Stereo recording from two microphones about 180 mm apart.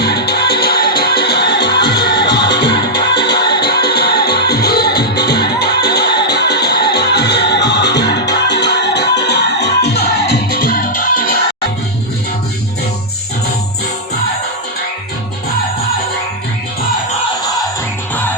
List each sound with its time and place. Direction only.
0.0 s music: 65° left (ahead or behind); by 11.3 s 50° left (ahead or behind)